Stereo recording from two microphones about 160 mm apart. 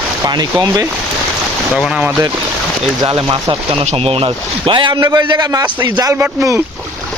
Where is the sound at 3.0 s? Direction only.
30° right (ahead or behind).